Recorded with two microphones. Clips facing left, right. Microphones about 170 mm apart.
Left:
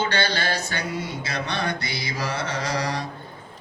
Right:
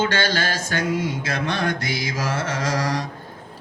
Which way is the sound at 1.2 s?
50° right (ahead or behind).